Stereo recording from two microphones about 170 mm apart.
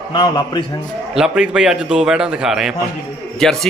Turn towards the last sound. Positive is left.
turn(degrees=0)  # may be behind; listen again after turning